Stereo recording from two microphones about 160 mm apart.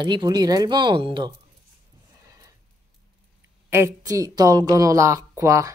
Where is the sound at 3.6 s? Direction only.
15° right (ahead or behind).